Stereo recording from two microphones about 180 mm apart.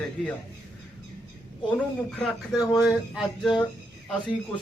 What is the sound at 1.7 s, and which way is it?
Speech, 5° left (ahead or behind).